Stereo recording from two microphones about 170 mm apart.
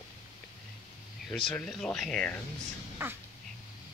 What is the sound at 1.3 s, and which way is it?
Speech, 5° left (ahead or behind).